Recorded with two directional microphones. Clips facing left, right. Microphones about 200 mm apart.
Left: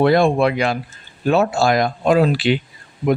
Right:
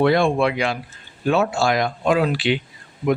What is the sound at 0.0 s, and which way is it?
Speech, 40° left (ahead or behind).